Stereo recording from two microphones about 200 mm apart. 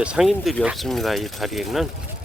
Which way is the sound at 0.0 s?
5° right (ahead or behind).